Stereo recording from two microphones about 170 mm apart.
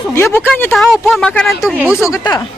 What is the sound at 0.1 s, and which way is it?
Speech, 15° left (ahead or behind).